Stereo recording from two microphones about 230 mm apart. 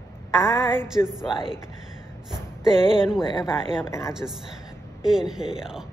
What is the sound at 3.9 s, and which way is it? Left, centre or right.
Speech, centre.